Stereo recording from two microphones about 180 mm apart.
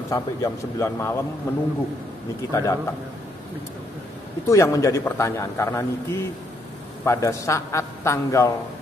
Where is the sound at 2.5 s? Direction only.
20° left (ahead or behind).